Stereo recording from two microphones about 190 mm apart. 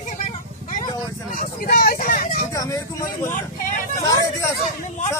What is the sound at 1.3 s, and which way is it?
Vehicle, 45° left (ahead or behind).